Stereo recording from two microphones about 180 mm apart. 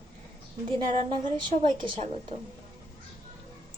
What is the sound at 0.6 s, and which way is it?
A woman's voice, 30° right (ahead or behind).